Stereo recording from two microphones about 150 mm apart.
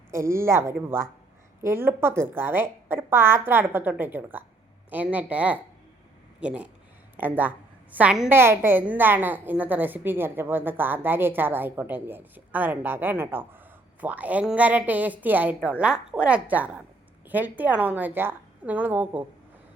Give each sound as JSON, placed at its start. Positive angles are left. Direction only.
{"t": 0.1, "sound": "a woman's voice", "side_deg": -20}